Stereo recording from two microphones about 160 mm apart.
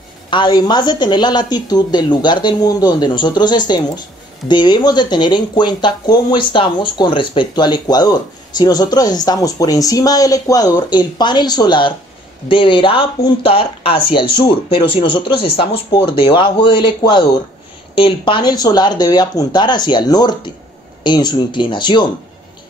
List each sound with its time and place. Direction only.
0.3 s speech: 30° left (ahead or behind)